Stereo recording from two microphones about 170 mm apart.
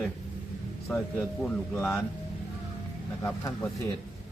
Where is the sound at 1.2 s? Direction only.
10° left (ahead or behind).